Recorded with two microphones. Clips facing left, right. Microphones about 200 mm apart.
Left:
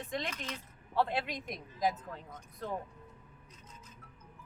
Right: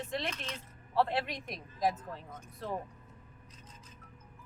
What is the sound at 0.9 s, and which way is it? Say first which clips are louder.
Speech: right 2 dB; centre (ahead or behind).